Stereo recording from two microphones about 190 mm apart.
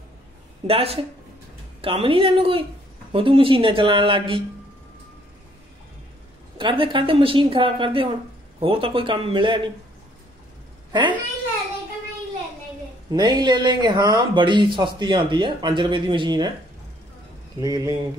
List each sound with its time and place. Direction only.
0.7 s speech: 30° right (ahead or behind)
6.6 s speech: 25° right (ahead or behind)
10.9 s a woman's voice: 25° right (ahead or behind)
13.1 s speech: 20° right (ahead or behind)
17.6 s speech: 20° right (ahead or behind)